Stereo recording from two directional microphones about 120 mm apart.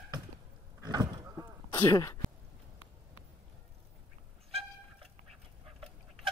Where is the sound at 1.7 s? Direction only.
25° left (ahead or behind).